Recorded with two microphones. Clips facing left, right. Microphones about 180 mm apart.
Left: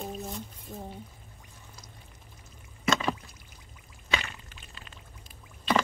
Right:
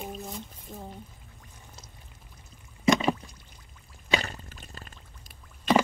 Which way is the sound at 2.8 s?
15° right (ahead or behind).